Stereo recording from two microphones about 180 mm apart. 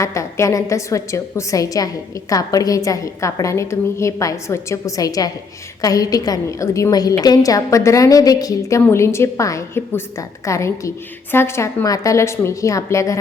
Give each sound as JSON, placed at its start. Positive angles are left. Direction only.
{"t": 0.0, "sound": "a woman's voice", "side_deg": 15}